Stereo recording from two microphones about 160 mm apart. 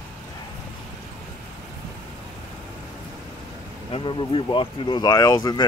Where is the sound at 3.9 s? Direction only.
30° left (ahead or behind).